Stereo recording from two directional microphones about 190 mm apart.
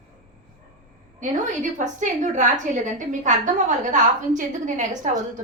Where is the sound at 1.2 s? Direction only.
40° right (ahead or behind).